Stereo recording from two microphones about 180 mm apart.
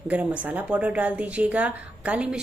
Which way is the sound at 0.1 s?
10° right (ahead or behind).